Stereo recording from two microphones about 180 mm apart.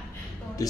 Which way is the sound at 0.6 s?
20° left (ahead or behind).